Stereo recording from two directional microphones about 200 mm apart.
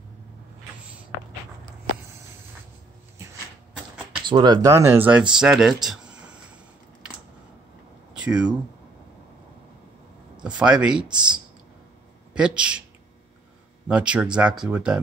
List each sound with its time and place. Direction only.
4.2 s speech: 20° right (ahead or behind); by 6.1 s centre (ahead or behind)
8.1 s a sound: 5° right (ahead or behind)
10.3 s speech: 5° right (ahead or behind)
12.4 s speech: 5° right (ahead or behind)
13.8 s speech: 5° right (ahead or behind)